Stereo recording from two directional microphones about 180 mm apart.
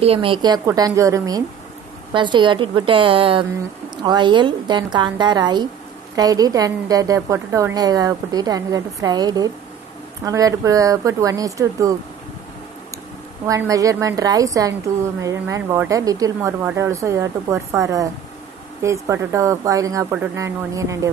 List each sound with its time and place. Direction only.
0.0 s a woman's voice: 30° right (ahead or behind)
13.5 s a woman's voice: 20° right (ahead or behind)